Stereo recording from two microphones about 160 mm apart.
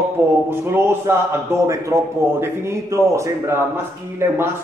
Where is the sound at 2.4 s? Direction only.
15° right (ahead or behind).